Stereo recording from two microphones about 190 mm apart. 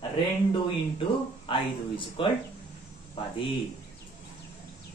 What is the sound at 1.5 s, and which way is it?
Speech, 25° left (ahead or behind).